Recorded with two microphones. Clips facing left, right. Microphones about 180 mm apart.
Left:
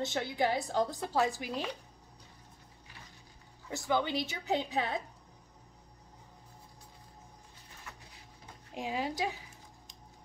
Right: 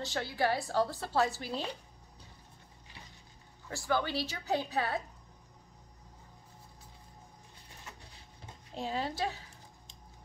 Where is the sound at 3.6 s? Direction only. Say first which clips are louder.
Left 1 dB; 20° left (ahead or behind).